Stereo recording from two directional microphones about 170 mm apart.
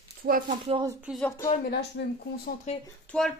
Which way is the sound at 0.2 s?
60° right (ahead or behind).